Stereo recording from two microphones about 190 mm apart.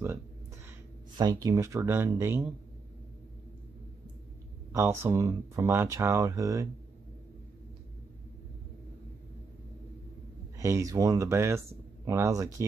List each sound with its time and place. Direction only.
0.7 s speech: 20° right (ahead or behind)
4.7 s speech: 15° right (ahead or behind)
10.6 s speech: 15° right (ahead or behind)